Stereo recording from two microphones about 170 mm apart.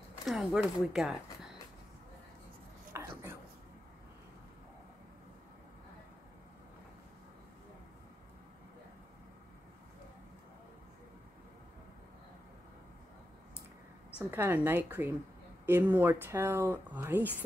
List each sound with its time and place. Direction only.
0.2 s speech: centre (ahead or behind)
2.9 s chopping: 15° right (ahead or behind)
14.3 s speech: 10° right (ahead or behind)